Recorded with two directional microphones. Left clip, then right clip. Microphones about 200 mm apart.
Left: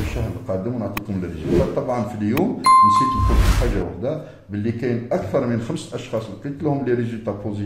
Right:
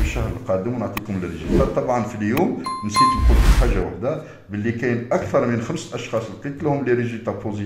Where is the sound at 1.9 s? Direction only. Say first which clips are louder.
Right 2 dB; 25° left (ahead or behind).